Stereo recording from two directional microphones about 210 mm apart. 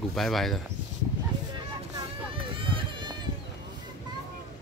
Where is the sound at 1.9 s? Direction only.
25° right (ahead or behind).